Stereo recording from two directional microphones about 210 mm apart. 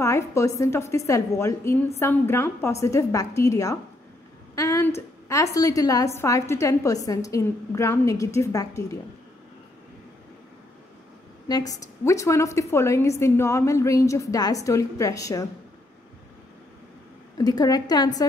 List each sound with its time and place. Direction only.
0.0 s a woman's voice: 15° left (ahead or behind)
11.4 s a woman's voice: 20° left (ahead or behind)
17.4 s a woman's voice: 20° left (ahead or behind)